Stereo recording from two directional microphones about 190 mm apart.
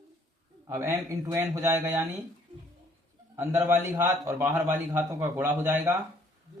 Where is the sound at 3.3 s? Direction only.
10° right (ahead or behind).